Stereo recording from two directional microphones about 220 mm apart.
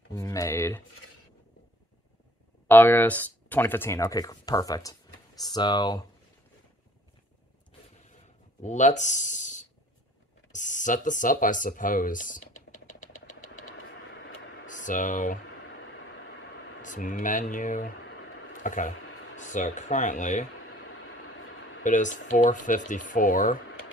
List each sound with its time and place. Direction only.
0.1 s speech: 15° left (ahead or behind)
2.7 s speech: 10° left (ahead or behind)
8.6 s speech: 35° left (ahead or behind)
13.8 s vehicle: 55° left (ahead or behind)
14.7 s speech: 35° left (ahead or behind)
15.6 s vehicle: 55° left (ahead or behind)
16.8 s speech: 35° left (ahead or behind)
18.0 s a sound: 55° left (ahead or behind)
18.5 s speech: 35° left (ahead or behind)
19.0 s a sound: 60° left (ahead or behind)
19.4 s speech: 35° left (ahead or behind)
20.6 s a sound: 60° left (ahead or behind)
21.8 s speech: 35° left (ahead or behind)